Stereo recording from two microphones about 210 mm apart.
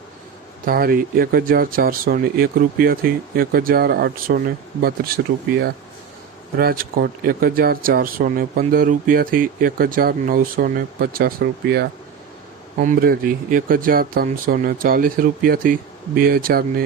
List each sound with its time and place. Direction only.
0.6 s speech: 45° right (ahead or behind)